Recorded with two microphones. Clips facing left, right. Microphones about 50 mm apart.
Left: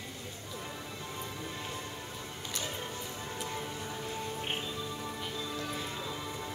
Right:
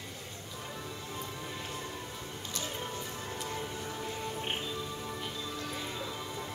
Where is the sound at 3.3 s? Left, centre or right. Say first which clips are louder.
Even; centre.